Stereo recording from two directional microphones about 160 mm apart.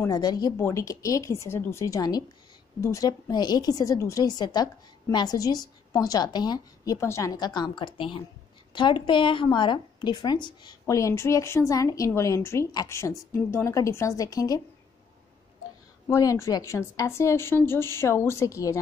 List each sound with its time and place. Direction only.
0.0 s a woman's voice: 25° left (ahead or behind)
16.1 s speech: 20° left (ahead or behind)